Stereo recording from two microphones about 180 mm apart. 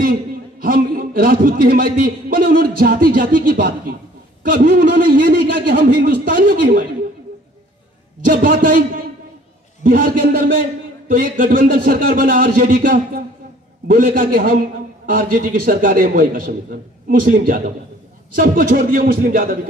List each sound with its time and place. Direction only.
0.6 s a man's voice: 50° right (ahead or behind)
8.2 s a man's voice: 50° right (ahead or behind)